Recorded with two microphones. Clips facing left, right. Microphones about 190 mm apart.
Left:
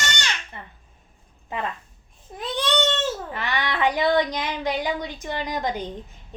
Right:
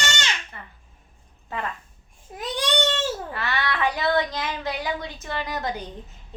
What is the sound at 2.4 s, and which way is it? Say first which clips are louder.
Baby cry: left 1 dB; 10° right (ahead or behind).